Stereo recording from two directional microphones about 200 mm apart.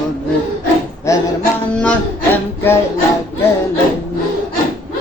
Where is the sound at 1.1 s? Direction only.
15° left (ahead or behind).